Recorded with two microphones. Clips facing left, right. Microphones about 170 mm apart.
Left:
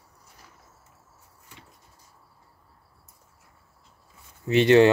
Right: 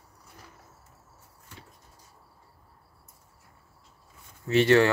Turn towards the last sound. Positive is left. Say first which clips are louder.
# left 4 dB
turn(degrees=20)  # may be behind; listen again after turning